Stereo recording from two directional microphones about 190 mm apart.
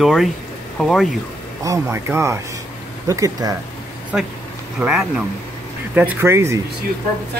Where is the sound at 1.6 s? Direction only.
15° right (ahead or behind).